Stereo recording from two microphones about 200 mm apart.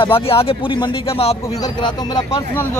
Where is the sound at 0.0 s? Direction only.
25° left (ahead or behind).